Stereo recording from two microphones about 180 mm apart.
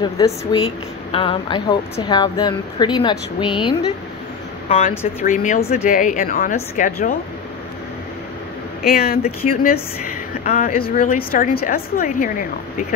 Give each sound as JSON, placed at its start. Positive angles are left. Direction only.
{"t": 0.0, "sound": "speech", "side_deg": 25}
{"t": 4.6, "sound": "speech", "side_deg": 45}
{"t": 8.9, "sound": "speech", "side_deg": 55}